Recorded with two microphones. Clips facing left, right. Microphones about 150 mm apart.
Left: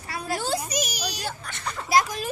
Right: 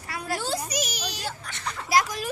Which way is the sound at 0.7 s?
15° left (ahead or behind).